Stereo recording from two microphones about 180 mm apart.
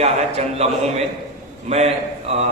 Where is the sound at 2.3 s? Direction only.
35° right (ahead or behind).